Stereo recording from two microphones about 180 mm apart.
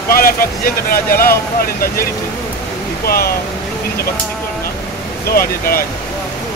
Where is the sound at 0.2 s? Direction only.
55° left (ahead or behind).